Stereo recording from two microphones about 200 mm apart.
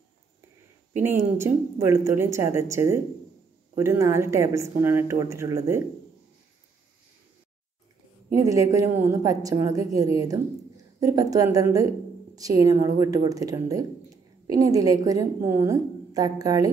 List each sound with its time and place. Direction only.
1.0 s a woman's voice: 15° right (ahead or behind)
8.3 s a woman's voice: 15° right (ahead or behind)